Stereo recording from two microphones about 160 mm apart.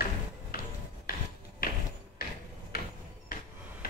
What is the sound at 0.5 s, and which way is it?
Music, 70° left (ahead or behind).